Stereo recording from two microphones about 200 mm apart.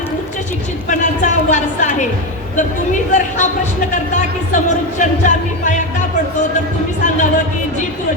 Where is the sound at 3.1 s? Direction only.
35° left (ahead or behind).